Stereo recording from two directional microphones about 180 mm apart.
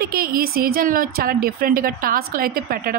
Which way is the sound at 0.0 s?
55° right (ahead or behind).